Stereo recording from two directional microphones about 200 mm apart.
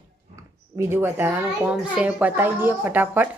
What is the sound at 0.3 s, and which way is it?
A child's voice, 10° right (ahead or behind).